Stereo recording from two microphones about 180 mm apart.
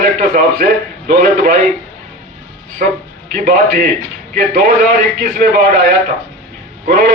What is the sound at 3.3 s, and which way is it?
A man's voice, 55° right (ahead or behind).